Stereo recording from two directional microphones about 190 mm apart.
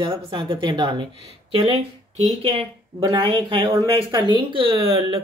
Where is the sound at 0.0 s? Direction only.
25° right (ahead or behind).